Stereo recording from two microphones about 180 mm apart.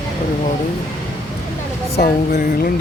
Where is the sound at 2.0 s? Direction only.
55° left (ahead or behind).